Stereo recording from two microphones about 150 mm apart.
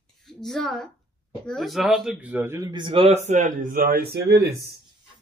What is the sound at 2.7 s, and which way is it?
Speech, 35° right (ahead or behind).